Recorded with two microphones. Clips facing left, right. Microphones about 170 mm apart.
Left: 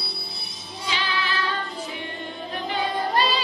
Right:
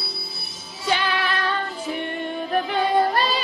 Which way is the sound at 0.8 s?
55° right (ahead or behind).